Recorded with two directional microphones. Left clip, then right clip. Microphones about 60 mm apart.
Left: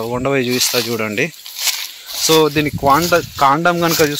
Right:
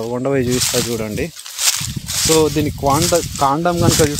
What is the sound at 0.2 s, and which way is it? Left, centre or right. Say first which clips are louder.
Speech: left 1 dB; right.